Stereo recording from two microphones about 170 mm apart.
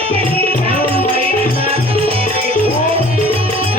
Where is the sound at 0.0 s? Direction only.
35° right (ahead or behind).